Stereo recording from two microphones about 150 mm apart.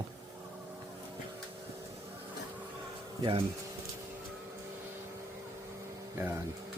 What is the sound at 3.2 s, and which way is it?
Speech, 35° right (ahead or behind).